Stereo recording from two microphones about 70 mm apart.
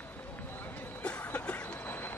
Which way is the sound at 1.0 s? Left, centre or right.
Left.